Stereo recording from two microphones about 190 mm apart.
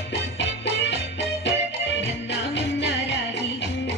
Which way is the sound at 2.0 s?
70° left (ahead or behind).